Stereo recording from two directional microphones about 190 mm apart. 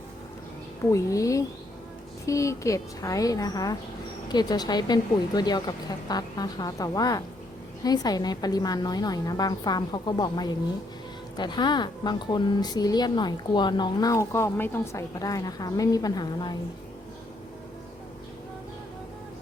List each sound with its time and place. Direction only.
0.9 s a woman's voice: 15° left (ahead or behind)